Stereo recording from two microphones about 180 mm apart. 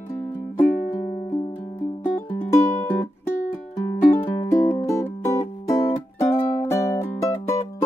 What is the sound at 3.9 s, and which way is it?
Music, 20° left (ahead or behind).